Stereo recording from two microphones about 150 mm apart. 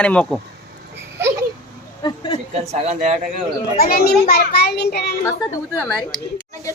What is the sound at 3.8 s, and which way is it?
A child's voice, 85° left.